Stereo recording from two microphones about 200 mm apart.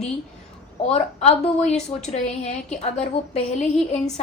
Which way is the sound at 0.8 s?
30° left (ahead or behind).